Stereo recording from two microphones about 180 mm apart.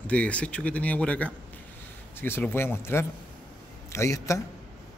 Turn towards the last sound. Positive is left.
turn(degrees=15)  # may be behind; listen again after turning